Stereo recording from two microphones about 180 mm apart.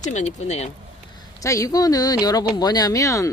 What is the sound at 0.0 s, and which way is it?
Speech, 40° left (ahead or behind).